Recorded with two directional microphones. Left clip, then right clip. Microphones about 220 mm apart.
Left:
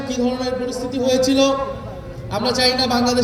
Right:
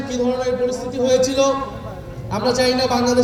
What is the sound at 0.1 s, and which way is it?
Speech, 35° left (ahead or behind).